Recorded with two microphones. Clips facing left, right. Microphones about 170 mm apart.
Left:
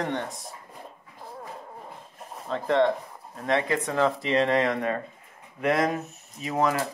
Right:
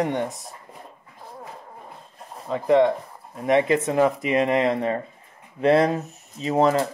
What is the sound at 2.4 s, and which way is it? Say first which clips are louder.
Speech: right 5 dB; 10° right (ahead or behind).